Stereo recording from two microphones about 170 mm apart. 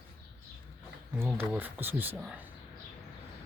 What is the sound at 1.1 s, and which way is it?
Speech, 10° right (ahead or behind).